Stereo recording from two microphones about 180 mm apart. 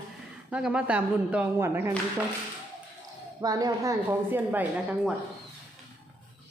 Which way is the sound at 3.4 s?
20° right (ahead or behind).